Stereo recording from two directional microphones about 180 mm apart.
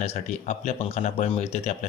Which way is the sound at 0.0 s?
35° left (ahead or behind).